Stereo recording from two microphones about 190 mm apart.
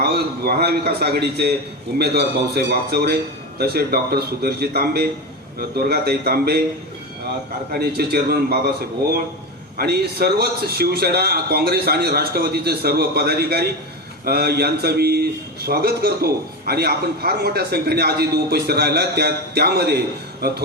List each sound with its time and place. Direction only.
0.0 s a man's voice: 55° right (ahead or behind)
7.7 s a man's voice: 55° right (ahead or behind)
9.7 s a man's voice: 55° right (ahead or behind)